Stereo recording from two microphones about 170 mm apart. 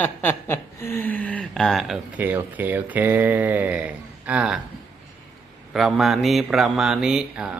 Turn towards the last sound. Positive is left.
turn(degrees=-5)  # may be behind; listen again after turning